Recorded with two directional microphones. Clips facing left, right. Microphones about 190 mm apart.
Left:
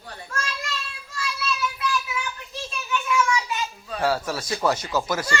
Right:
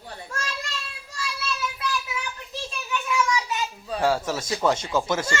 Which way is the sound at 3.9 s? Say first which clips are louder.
Right 1 dB; 20° right (ahead or behind).